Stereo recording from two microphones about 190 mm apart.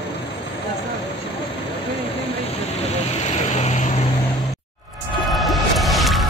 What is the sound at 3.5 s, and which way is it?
Vehicle, 35° left (ahead or behind).